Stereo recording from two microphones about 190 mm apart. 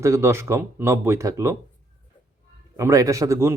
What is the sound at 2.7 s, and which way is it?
Speech, 15° right (ahead or behind).